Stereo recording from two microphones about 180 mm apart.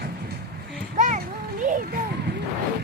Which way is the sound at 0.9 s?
45° right (ahead or behind).